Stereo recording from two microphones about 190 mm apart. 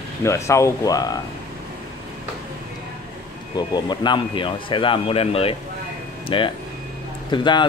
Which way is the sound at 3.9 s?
25° left (ahead or behind).